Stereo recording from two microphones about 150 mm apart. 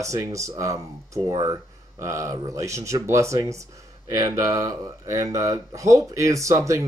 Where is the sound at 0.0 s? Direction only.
20° right (ahead or behind).